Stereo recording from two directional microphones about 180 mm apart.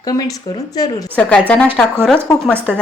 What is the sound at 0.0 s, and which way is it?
Speech, 20° left (ahead or behind).